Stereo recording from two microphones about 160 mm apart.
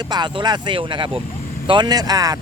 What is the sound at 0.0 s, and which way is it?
Speech, 25° right (ahead or behind).